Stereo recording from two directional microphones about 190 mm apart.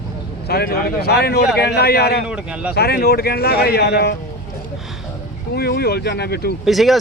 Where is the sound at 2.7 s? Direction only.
55° left (ahead or behind).